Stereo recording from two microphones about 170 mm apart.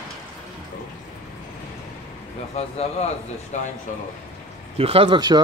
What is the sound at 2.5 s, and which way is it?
Speech, 40° left (ahead or behind).